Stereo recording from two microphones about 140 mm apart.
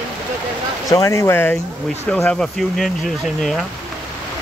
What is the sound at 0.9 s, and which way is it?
Speech, 20° left (ahead or behind).